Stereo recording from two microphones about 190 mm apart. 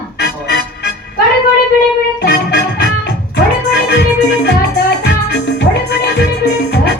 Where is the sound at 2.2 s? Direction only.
60° left (ahead or behind).